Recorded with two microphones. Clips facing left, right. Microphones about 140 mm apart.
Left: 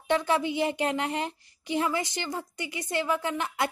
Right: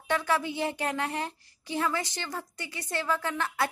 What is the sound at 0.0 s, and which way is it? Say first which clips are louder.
A woman's voice: left 3 dB; 20° left (ahead or behind).